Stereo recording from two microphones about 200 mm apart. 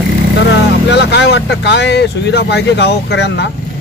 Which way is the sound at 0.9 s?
60° left (ahead or behind).